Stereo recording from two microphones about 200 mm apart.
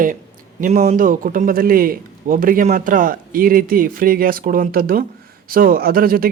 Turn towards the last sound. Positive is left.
turn(degrees=-45)  # may be behind; listen again after turning